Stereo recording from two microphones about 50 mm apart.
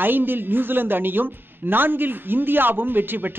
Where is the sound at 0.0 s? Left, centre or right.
Right.